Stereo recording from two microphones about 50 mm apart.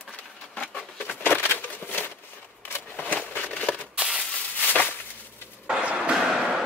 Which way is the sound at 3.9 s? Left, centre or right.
Centre.